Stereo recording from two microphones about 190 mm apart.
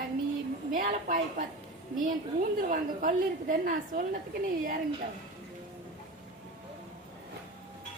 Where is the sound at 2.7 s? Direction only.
45° right (ahead or behind).